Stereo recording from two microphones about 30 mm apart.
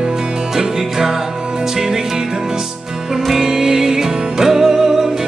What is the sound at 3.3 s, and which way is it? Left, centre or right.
Music, centre.